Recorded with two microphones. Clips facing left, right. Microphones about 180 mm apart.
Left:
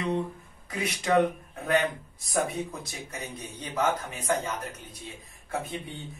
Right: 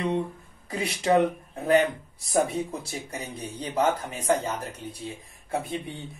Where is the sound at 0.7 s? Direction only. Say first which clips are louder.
Right 3 dB; 25° right (ahead or behind).